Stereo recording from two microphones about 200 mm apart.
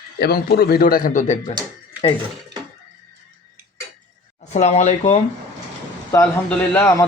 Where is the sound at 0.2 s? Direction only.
50° left (ahead or behind).